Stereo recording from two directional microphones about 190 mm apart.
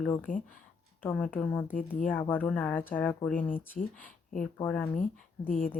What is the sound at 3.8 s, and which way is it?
Speech, 45° left (ahead or behind).